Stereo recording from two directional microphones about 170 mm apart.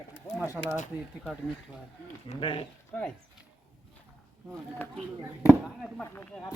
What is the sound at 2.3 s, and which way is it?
Speech, 30° left (ahead or behind).